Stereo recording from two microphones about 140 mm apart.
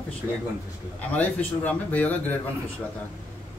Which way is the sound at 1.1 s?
10° left (ahead or behind).